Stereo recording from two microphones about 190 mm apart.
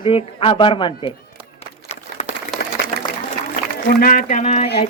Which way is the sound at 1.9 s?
35° left (ahead or behind).